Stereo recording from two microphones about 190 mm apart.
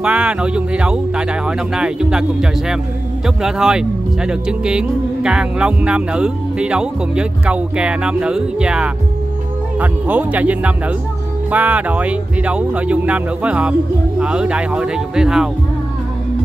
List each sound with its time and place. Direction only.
0.0 s speech: 5° right (ahead or behind)
3.4 s speech: 5° right (ahead or behind)